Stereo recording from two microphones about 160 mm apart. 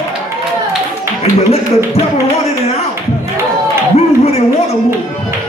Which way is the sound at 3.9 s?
40° left (ahead or behind).